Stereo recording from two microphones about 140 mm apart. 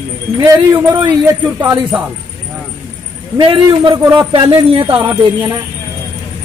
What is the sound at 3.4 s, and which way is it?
Speech, 35° right (ahead or behind).